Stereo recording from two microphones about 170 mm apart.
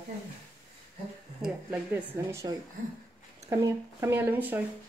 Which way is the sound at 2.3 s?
15° right (ahead or behind).